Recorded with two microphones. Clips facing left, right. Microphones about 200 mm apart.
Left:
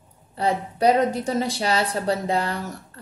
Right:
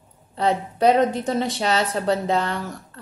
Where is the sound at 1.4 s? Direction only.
35° left (ahead or behind).